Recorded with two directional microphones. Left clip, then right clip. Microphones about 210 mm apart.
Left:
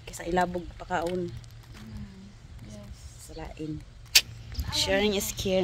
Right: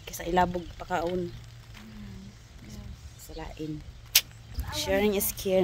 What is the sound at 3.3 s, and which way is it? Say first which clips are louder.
Speech: even; 5° right (ahead or behind).